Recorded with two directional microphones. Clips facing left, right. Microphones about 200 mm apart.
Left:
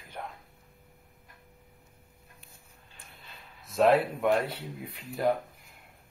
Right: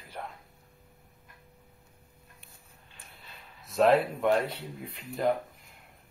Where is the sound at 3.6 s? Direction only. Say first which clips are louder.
Even; centre (ahead or behind).